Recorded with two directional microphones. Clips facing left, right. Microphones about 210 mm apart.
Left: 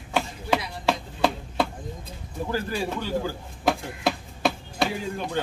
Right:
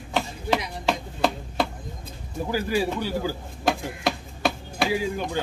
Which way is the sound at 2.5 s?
10° right (ahead or behind).